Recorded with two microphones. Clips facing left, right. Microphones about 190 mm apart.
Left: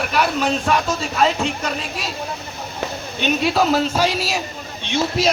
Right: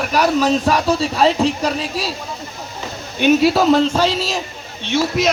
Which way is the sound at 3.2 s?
Centre (ahead or behind).